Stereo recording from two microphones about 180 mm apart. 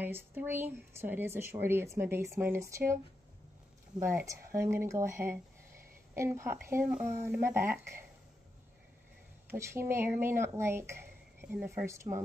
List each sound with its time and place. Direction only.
0.0 s speech: 10° right (ahead or behind)
4.3 s speech: 15° right (ahead or behind)
9.5 s speech: 15° right (ahead or behind)